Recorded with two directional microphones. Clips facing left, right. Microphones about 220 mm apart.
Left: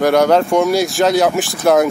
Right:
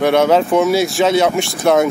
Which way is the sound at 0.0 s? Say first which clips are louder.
Even; centre (ahead or behind).